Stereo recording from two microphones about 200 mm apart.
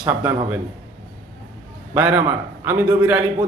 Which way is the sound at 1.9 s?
10° right (ahead or behind).